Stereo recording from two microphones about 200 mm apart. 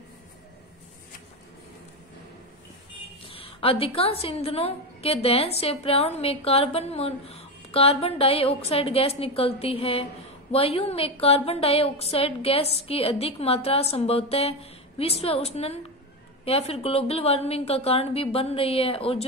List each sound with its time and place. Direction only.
3.3 s a woman's voice: 30° left (ahead or behind)